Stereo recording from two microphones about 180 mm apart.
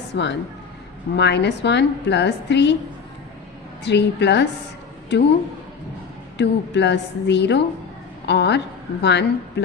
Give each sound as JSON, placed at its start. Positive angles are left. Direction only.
{"t": 0.1, "sound": "a woman's voice", "side_deg": 75}
{"t": 3.8, "sound": "a woman's voice", "side_deg": 75}
{"t": 6.3, "sound": "a woman's voice", "side_deg": 75}